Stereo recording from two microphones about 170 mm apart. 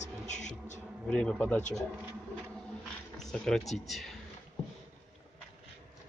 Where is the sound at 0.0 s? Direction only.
45° left (ahead or behind).